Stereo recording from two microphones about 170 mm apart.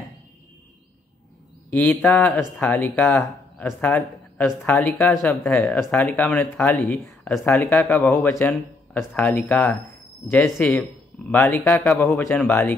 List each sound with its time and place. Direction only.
1.7 s speech: 10° left (ahead or behind)
5.1 s speech: centre (ahead or behind)
7.1 s speech: centre (ahead or behind)
7.4 s speech: 10° left (ahead or behind)